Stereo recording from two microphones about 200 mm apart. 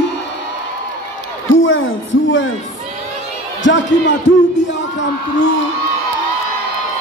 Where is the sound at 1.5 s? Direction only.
75° left (ahead or behind).